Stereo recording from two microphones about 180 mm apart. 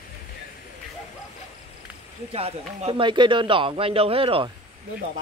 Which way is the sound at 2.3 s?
35° right (ahead or behind).